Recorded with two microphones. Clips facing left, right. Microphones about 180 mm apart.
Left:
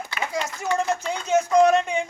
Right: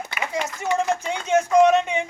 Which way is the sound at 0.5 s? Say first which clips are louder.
Right 2 dB; 10° right (ahead or behind).